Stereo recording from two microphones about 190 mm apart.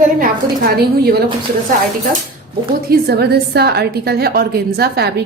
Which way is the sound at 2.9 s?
55° right (ahead or behind).